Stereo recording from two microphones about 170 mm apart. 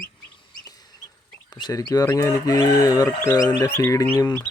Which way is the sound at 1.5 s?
25° left (ahead or behind).